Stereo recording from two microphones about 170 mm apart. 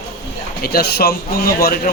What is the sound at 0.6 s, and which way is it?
Speech, 65° left (ahead or behind).